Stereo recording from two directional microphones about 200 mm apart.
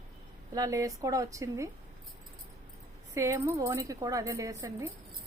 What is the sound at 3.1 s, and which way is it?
A woman's voice, 15° right (ahead or behind).